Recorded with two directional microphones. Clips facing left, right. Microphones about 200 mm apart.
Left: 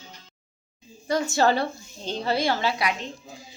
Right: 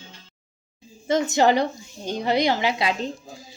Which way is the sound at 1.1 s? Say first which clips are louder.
Right 3 dB; 20° right (ahead or behind).